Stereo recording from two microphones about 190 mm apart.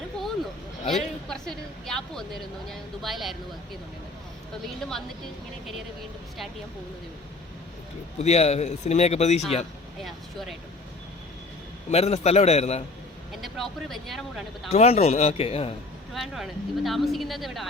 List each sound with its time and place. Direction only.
0.9 s a woman's voice: centre (ahead or behind)
4.8 s a woman's voice: centre (ahead or behind)
8.2 s a man's voice: 35° left (ahead or behind)
10.0 s a woman's voice: centre (ahead or behind)
11.9 s a man's voice: 35° left (ahead or behind)
13.3 s a woman's voice: centre (ahead or behind)
14.7 s a man's voice: 35° left (ahead or behind)
16.1 s a woman's voice: centre (ahead or behind)